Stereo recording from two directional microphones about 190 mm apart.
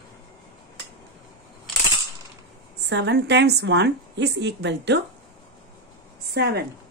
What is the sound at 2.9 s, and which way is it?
A woman's voice, 65° right (ahead or behind).